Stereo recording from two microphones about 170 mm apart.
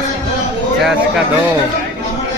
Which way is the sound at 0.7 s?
5° right (ahead or behind).